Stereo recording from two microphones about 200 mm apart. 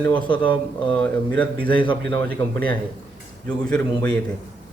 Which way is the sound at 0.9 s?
5° left (ahead or behind).